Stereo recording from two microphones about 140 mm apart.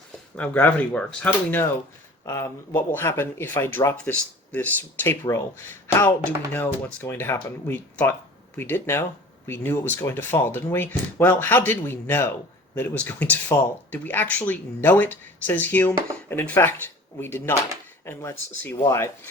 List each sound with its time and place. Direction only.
0.3 s speech: 10° left (ahead or behind)